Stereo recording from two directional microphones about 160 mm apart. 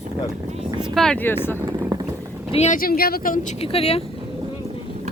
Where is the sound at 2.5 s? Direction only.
45° left (ahead or behind).